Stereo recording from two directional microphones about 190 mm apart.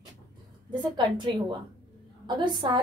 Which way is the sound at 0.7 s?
25° right (ahead or behind).